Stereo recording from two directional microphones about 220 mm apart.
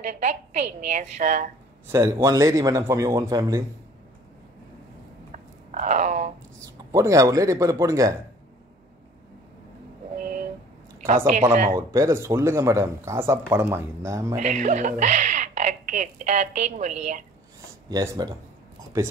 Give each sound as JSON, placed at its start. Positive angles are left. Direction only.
{"t": 0.0, "sound": "speech", "side_deg": -30}
{"t": 1.9, "sound": "speech", "side_deg": -10}
{"t": 5.3, "sound": "a sound", "side_deg": -35}
{"t": 6.6, "sound": "speech", "side_deg": -15}
{"t": 10.1, "sound": "a sound", "side_deg": -35}
{"t": 11.1, "sound": "speech", "side_deg": -35}
{"t": 11.9, "sound": "speech", "side_deg": -15}
{"t": 14.3, "sound": "speech", "side_deg": -35}
{"t": 17.8, "sound": "speech", "side_deg": -15}